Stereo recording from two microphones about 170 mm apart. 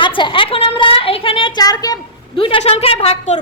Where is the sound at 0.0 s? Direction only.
30° left (ahead or behind).